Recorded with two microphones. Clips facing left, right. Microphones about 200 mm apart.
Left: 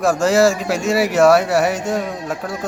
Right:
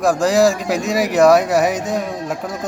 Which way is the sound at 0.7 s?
Centre (ahead or behind).